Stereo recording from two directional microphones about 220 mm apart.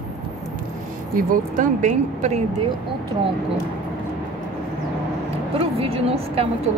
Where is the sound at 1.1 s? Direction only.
35° right (ahead or behind).